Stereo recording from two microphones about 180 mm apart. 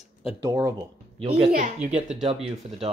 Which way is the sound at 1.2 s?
30° right (ahead or behind).